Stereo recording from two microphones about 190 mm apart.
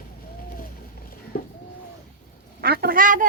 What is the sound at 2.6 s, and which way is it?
Quack, 55° right (ahead or behind).